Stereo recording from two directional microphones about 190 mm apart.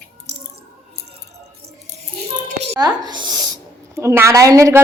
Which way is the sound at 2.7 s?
20° right (ahead or behind).